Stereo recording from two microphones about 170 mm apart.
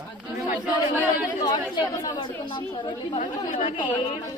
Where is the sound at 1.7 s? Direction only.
25° left (ahead or behind).